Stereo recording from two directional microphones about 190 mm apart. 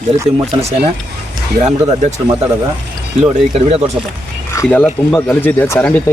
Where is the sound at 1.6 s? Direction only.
35° right (ahead or behind).